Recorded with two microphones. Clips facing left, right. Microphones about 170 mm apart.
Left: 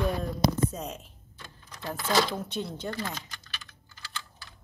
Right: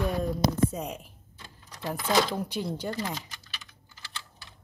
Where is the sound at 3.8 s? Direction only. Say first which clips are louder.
Left 3 dB; 20° right (ahead or behind).